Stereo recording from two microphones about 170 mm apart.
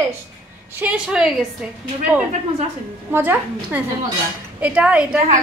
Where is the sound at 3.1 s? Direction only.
10° right (ahead or behind).